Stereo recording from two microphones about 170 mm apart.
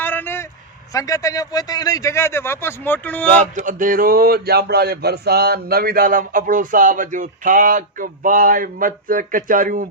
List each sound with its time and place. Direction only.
0.0 s a sound: 10° left (ahead or behind)
0.9 s a man's voice: 20° left (ahead or behind)
3.5 s speech: 50° right (ahead or behind)